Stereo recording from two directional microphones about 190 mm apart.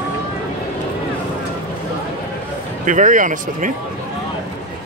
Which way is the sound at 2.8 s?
40° right (ahead or behind).